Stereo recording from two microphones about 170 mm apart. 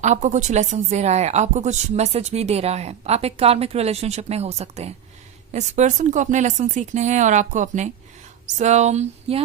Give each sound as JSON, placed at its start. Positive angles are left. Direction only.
{"t": 0.0, "sound": "speech", "side_deg": -45}